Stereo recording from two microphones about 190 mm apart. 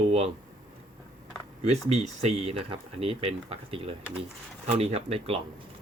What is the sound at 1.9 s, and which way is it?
Speech, 35° right (ahead or behind).